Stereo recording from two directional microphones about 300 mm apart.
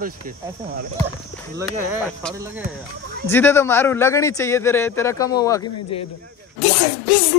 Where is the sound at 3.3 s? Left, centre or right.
Centre.